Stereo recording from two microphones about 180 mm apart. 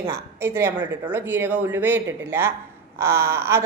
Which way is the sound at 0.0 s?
15° right (ahead or behind).